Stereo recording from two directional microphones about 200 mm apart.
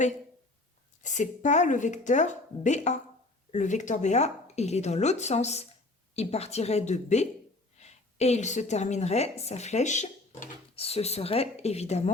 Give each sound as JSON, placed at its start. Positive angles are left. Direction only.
{"t": 1.0, "sound": "a woman's voice", "side_deg": 35}